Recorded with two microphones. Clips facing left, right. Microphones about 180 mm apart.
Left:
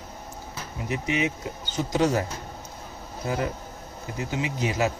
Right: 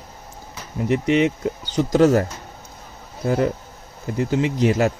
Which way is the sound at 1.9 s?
45° right (ahead or behind).